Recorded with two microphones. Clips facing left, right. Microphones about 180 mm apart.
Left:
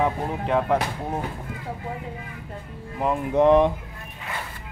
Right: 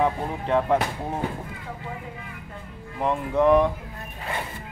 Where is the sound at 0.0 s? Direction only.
Centre (ahead or behind).